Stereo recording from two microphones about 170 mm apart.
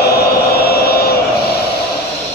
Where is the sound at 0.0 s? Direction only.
65° left (ahead or behind).